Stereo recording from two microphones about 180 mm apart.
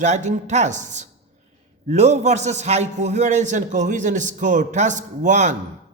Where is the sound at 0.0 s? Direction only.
40° right (ahead or behind).